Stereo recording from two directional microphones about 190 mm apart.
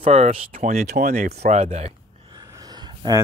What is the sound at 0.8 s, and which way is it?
Speech, 55° right (ahead or behind).